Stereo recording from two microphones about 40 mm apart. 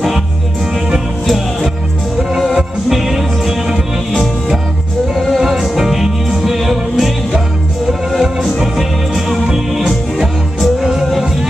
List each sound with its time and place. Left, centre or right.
1.2 s music: centre
5.1 s music: centre
5.4 s music: centre